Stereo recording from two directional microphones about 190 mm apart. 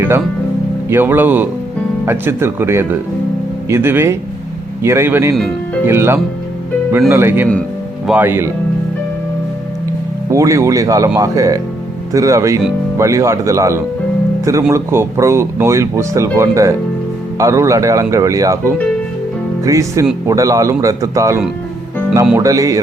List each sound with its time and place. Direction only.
0.9 s speech: 10° right (ahead or behind)
5.3 s speech: centre (ahead or behind)
5.8 s speech: 15° right (ahead or behind)
10.2 s speech: 15° right (ahead or behind)